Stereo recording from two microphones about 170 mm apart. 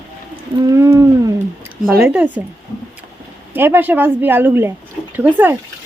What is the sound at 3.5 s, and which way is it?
A woman's voice, 10° right (ahead or behind).